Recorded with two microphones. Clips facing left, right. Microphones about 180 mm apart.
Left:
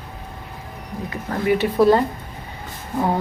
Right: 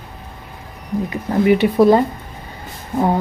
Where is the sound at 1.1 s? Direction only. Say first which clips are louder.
Right 5 dB; 15° right (ahead or behind).